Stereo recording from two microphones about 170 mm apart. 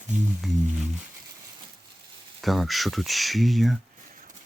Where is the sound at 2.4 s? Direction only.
Centre (ahead or behind).